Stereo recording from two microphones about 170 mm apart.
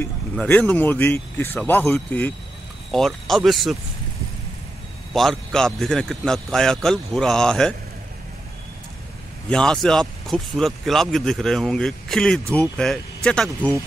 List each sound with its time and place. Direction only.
0.0 s speech: 10° left (ahead or behind)
5.1 s speech: centre (ahead or behind)
9.5 s speech: 5° left (ahead or behind)